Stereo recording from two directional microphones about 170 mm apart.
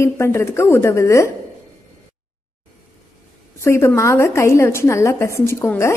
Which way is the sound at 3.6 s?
15° left (ahead or behind).